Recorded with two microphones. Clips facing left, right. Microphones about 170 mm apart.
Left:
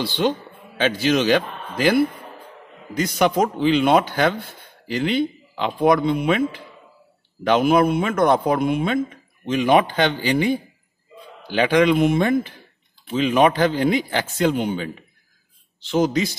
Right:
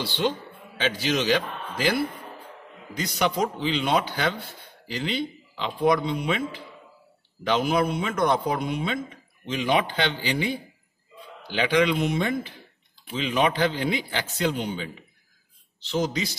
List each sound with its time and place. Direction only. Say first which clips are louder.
0.0 s a man's voice: left 5 dB; 60° left (ahead or behind)
3.0 s a man's voice: left 6 dB; 50° left (ahead or behind)